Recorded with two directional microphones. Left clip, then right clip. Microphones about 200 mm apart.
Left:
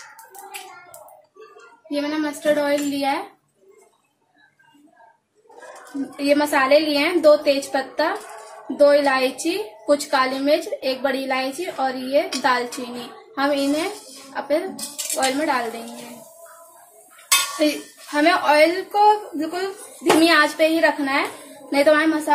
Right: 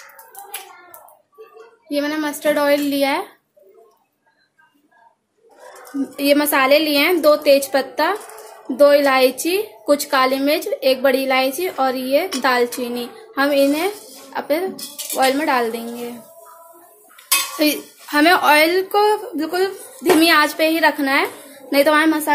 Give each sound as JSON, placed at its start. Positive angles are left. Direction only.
{"t": 1.9, "sound": "a woman's voice", "side_deg": -40}
{"t": 6.1, "sound": "a woman's voice", "side_deg": -40}
{"t": 17.6, "sound": "a woman's voice", "side_deg": -50}